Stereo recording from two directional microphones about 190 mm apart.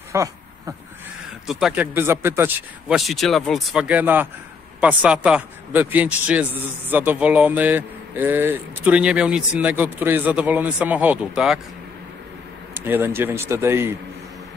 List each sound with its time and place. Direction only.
0.1 s a sound: 15° right (ahead or behind)
1.5 s a man's voice: 5° right (ahead or behind)
12.7 s a man's voice: 10° right (ahead or behind)